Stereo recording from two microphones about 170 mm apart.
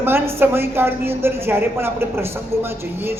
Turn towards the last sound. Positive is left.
turn(degrees=-15)  # may be behind; listen again after turning